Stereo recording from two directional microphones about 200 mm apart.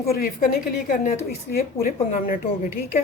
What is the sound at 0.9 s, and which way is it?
A woman's voice, 40° left (ahead or behind).